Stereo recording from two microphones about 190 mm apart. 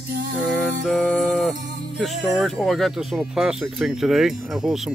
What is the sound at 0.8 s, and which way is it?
Music, centre (ahead or behind).